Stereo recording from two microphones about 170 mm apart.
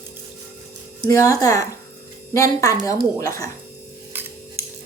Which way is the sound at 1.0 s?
20° left (ahead or behind).